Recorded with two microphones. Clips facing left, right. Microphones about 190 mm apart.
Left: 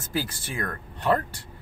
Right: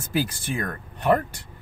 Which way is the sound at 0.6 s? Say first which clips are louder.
Right 3 dB; 15° right (ahead or behind).